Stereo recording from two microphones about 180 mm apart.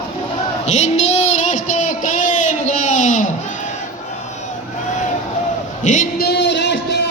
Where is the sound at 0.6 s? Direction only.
40° left (ahead or behind).